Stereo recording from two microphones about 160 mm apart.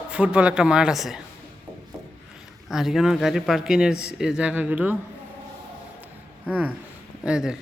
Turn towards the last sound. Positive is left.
turn(degrees=-5)  # may be behind; listen again after turning